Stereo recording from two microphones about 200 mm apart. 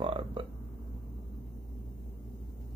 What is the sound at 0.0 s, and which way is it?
Burping, 25° right (ahead or behind).